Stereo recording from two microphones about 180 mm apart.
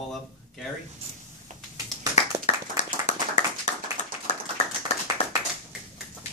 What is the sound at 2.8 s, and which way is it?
Clapping, 40° left (ahead or behind).